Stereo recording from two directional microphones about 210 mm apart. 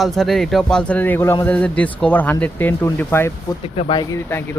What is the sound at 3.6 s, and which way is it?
Speech, 25° left (ahead or behind).